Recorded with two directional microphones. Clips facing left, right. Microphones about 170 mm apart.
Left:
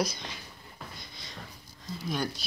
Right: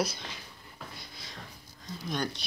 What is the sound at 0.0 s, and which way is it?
Speech, 5° right (ahead or behind).